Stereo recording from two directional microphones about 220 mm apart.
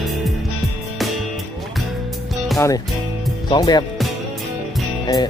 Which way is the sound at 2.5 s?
15° left (ahead or behind).